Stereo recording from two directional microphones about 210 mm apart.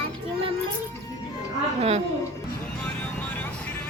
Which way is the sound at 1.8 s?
30° right (ahead or behind).